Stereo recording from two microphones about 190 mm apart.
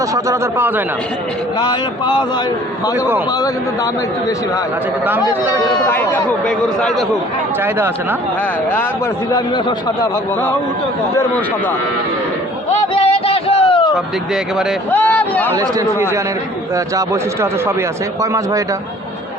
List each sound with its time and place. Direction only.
0.0 s speech: 15° right (ahead or behind)
1.5 s a man's voice: 20° left (ahead or behind)
5.8 s a man's voice: 10° left (ahead or behind)
9.3 s a man's voice: 20° left (ahead or behind)
12.9 s a sound: 30° left (ahead or behind)
14.8 s speech: 10° left (ahead or behind)
15.5 s speech: 15° right (ahead or behind)